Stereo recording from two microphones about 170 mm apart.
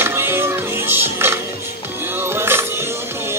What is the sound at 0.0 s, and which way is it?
Music, 15° right (ahead or behind).